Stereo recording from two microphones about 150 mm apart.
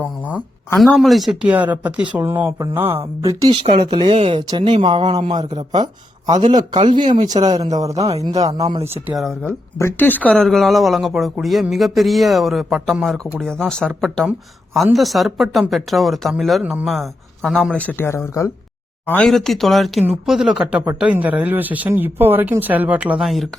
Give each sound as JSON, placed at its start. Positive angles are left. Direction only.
{"t": 0.9, "sound": "speech", "side_deg": 0}
{"t": 3.5, "sound": "speech", "side_deg": -35}
{"t": 7.0, "sound": "speech", "side_deg": -55}
{"t": 7.3, "sound": "speech", "side_deg": -25}
{"t": 9.1, "sound": "speech", "side_deg": 0}
{"t": 9.7, "sound": "speech", "side_deg": 15}